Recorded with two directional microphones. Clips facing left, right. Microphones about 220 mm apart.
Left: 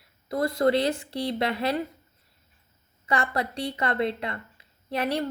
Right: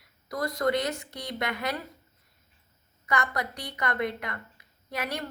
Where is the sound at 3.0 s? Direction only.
30° left (ahead or behind).